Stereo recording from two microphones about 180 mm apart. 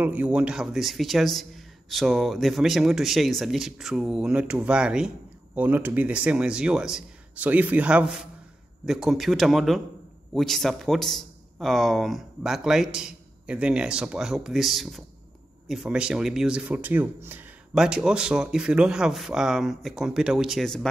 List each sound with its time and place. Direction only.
0.0 s speech: 10° right (ahead or behind)